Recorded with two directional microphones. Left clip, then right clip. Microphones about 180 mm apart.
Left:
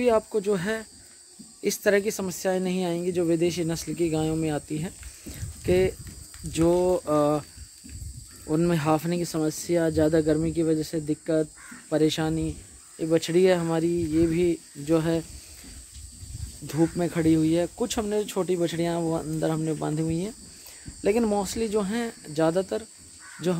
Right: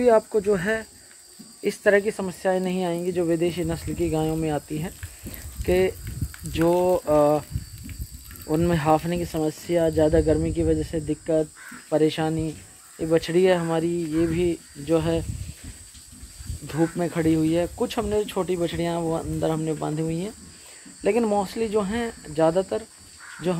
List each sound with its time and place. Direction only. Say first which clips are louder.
0.0 s speech: right 4 dB; 5° left (ahead or behind)
8.5 s speech: right 3 dB; 15° left (ahead or behind)
16.6 s speech: right 1 dB; 25° left (ahead or behind)